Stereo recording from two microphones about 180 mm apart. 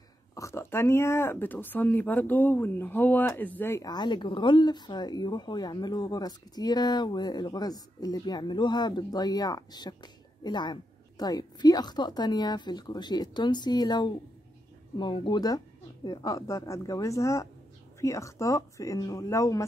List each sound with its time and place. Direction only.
0.3 s speech: 15° left (ahead or behind)